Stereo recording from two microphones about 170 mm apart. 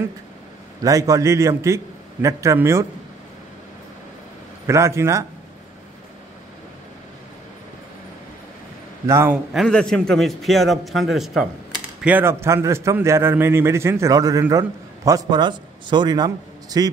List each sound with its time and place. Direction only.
0.8 s a man's voice: 20° right (ahead or behind)
4.6 s a man's voice: 15° right (ahead or behind)
9.0 s a man's voice: 15° right (ahead or behind)
9.5 s a man's voice: 5° left (ahead or behind); by 16.9 s 20° right (ahead or behind)